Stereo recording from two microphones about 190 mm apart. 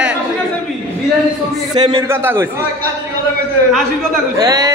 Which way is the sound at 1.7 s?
20° right (ahead or behind).